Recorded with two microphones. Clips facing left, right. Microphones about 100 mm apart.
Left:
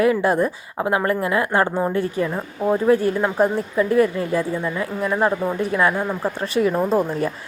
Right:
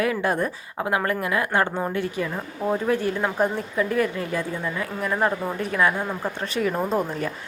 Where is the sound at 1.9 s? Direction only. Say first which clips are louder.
Left 5 dB; 40° left (ahead or behind).